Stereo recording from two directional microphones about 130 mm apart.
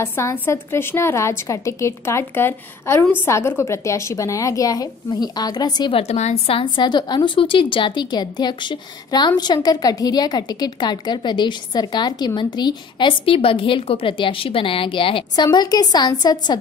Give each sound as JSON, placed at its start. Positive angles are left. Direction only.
{"t": 0.0, "sound": "a woman's voice", "side_deg": 20}
{"t": 5.9, "sound": "a woman's voice", "side_deg": 55}